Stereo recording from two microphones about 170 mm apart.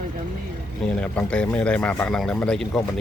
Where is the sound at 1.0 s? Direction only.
5° left (ahead or behind).